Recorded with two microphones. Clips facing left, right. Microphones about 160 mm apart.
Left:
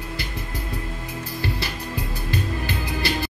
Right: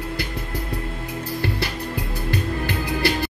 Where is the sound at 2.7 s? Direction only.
60° right (ahead or behind).